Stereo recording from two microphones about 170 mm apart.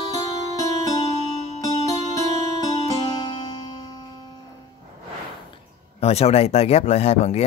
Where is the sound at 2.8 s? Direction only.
30° left (ahead or behind).